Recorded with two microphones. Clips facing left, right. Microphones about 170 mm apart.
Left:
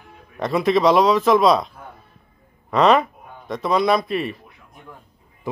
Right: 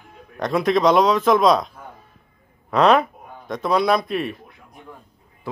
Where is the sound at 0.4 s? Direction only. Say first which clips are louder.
Left 1 dB; centre (ahead or behind).